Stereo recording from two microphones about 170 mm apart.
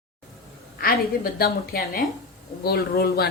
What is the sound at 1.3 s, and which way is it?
A woman's voice, 65° left (ahead or behind).